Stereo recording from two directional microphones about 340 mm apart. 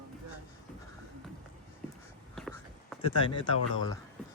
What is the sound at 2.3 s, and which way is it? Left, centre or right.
Whispering, centre.